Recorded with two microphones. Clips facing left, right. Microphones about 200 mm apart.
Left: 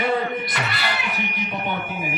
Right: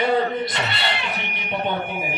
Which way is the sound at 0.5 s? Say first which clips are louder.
Right 1 dB; 25° right (ahead or behind).